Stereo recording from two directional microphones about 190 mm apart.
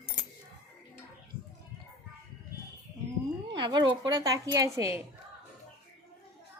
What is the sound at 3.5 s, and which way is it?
A woman's voice, 25° right (ahead or behind).